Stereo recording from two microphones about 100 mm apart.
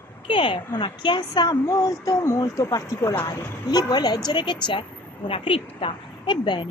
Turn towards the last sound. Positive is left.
turn(degrees=50)  # may be behind; listen again after turning